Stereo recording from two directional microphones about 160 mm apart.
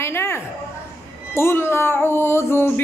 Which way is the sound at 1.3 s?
15° left (ahead or behind).